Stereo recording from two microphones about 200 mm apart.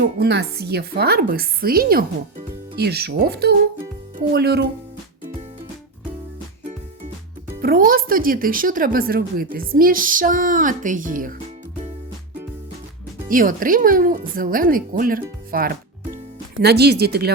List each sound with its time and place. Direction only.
0.0 s speech: 55° right (ahead or behind)
7.6 s speech: 45° right (ahead or behind)
13.2 s speech: 45° right (ahead or behind)